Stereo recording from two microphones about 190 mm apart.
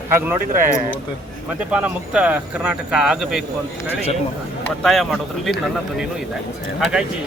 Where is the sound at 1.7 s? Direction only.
5° right (ahead or behind).